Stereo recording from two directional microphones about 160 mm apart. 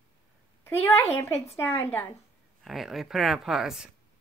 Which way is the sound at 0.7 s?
15° left (ahead or behind).